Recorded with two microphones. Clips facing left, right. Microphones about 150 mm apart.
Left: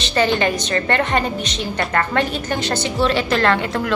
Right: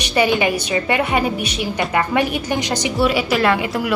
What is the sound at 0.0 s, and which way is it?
A woman's voice, 10° right (ahead or behind).